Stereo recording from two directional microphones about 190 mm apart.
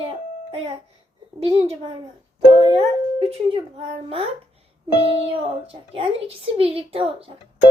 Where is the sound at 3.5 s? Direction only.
30° right (ahead or behind).